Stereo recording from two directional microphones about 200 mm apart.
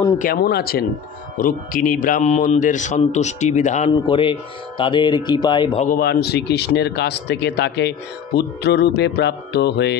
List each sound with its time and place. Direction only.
0.2 s a man's voice: 50° left (ahead or behind)
3.9 s speech: 25° left (ahead or behind)
5.9 s speech: 50° left (ahead or behind)